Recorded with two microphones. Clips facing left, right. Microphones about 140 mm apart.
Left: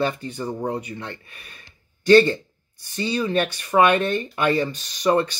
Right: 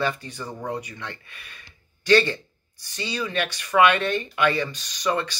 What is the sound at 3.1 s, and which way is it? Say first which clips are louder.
Speech: left 5 dB; 35° left (ahead or behind).